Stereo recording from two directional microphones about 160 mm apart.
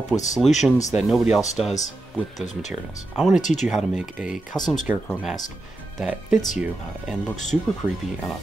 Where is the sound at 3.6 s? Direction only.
5° right (ahead or behind).